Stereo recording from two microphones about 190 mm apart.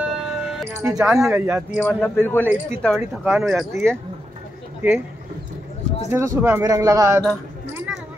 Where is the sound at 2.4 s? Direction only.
10° right (ahead or behind).